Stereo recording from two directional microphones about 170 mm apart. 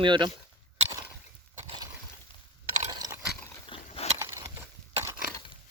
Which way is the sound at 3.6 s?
30° left (ahead or behind).